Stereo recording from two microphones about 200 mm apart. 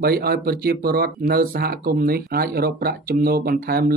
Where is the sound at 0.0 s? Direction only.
50° right (ahead or behind).